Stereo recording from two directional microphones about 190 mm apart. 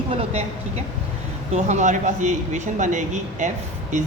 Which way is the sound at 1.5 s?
40° right (ahead or behind).